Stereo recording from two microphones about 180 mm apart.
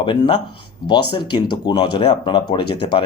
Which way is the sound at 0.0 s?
25° left (ahead or behind).